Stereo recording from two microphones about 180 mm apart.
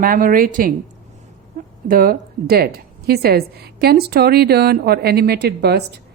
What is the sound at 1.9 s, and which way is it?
Speech, 50° right (ahead or behind).